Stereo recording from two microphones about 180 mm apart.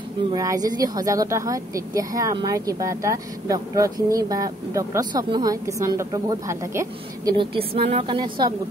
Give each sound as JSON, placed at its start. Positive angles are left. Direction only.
{"t": 0.3, "sound": "speech", "side_deg": -20}
{"t": 7.3, "sound": "speech", "side_deg": -30}